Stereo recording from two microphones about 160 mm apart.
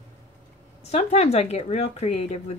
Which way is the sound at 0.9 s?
45° left (ahead or behind).